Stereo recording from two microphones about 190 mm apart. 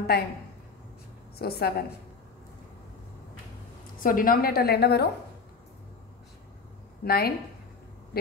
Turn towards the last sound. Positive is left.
turn(degrees=55)  # may be behind; listen again after turning